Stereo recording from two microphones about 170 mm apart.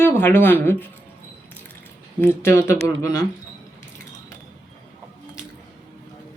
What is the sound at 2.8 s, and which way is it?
Speech, 20° left (ahead or behind).